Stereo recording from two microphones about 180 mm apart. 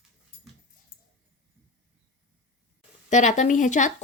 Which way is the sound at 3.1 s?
40° left (ahead or behind).